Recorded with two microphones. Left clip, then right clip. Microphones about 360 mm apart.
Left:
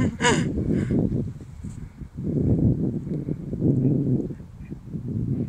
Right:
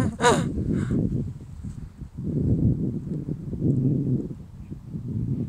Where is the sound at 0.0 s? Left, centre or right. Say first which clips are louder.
Right 1 dB; centre.